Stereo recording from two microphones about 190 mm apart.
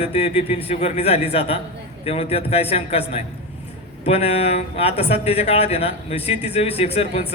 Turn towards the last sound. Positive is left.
turn(degrees=30)  # may be behind; listen again after turning